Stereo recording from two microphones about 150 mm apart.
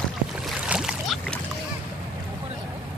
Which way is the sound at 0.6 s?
5° right (ahead or behind).